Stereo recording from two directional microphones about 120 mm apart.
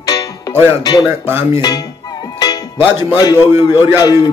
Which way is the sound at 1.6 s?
30° left (ahead or behind).